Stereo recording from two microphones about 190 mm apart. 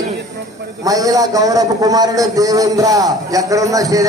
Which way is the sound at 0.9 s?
20° right (ahead or behind).